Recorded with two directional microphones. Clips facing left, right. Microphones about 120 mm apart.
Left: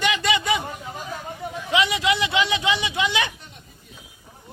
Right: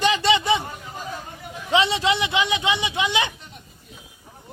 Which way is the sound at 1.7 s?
30° right (ahead or behind).